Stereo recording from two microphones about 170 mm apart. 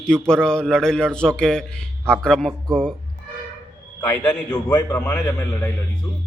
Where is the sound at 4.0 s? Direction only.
15° left (ahead or behind).